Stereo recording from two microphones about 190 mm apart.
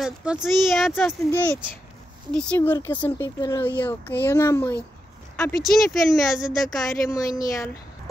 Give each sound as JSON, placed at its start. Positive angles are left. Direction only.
{"t": 0.0, "sound": "speech", "side_deg": -5}
{"t": 0.9, "sound": "speech", "side_deg": 10}
{"t": 5.6, "sound": "speech", "side_deg": 0}
{"t": 7.2, "sound": "speech", "side_deg": 20}